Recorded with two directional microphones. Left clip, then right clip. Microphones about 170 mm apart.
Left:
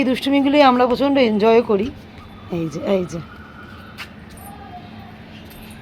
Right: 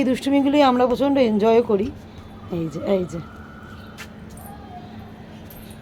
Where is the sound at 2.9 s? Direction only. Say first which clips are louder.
Left 2 dB; 30° left (ahead or behind).